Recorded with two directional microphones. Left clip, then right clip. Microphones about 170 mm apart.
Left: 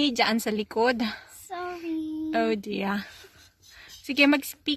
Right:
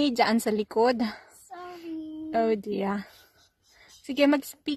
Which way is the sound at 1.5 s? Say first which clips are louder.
Left 7 dB; 25° left (ahead or behind).